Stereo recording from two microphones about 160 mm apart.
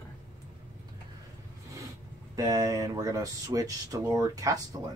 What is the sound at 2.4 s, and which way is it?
Speech, 20° right (ahead or behind).